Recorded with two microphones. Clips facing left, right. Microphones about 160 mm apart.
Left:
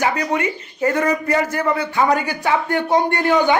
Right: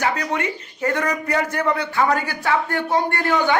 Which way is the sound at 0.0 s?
15° left (ahead or behind).